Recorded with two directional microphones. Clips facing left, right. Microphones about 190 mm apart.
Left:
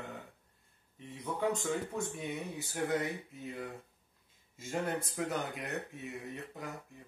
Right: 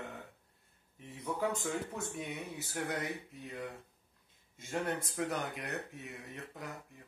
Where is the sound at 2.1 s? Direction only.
Centre (ahead or behind).